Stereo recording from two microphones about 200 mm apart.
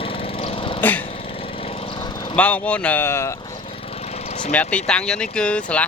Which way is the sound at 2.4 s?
5° left (ahead or behind).